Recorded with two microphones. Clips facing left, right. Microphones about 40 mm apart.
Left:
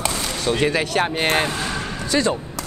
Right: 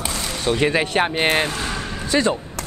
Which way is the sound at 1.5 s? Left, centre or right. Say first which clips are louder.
Left 1 dB; centre.